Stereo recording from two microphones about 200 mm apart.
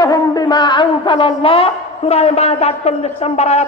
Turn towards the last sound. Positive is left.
turn(degrees=35)  # may be behind; listen again after turning